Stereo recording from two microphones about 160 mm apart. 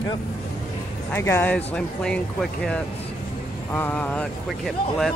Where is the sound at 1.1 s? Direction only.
15° left (ahead or behind).